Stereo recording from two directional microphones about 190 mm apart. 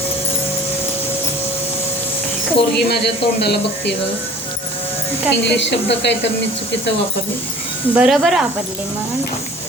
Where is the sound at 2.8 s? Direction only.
60° left (ahead or behind).